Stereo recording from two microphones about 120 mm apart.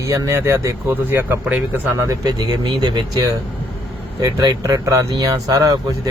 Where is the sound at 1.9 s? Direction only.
25° right (ahead or behind).